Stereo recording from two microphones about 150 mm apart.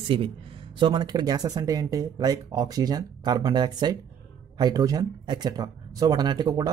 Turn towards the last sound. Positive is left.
turn(degrees=-25)  # may be behind; listen again after turning